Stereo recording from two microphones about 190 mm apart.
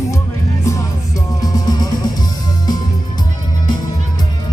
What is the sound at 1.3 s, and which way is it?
Music, 20° left (ahead or behind).